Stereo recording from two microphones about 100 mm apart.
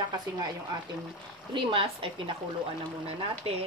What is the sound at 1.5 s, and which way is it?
Speech, 60° right (ahead or behind).